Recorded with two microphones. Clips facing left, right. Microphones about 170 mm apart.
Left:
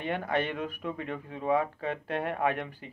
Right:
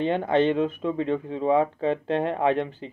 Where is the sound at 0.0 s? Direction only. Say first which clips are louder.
Right 9 dB; 25° right (ahead or behind).